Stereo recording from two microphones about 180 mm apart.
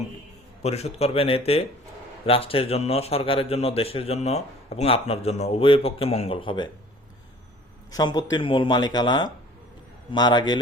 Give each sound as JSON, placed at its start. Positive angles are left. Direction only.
{"t": 0.6, "sound": "a man's voice", "side_deg": 35}
{"t": 7.9, "sound": "speech", "side_deg": 20}